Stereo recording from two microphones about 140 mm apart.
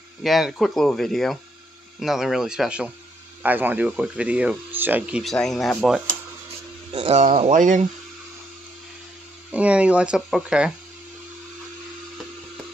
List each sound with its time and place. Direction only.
0.2 s speech: centre (ahead or behind)
5.2 s speech: centre (ahead or behind)
7.1 s speech: 50° right (ahead or behind)
7.5 s speech: 65° right (ahead or behind)
9.5 s speech: 10° right (ahead or behind)